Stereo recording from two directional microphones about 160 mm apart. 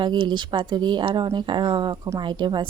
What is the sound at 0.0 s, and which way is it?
A woman's voice, 30° right (ahead or behind).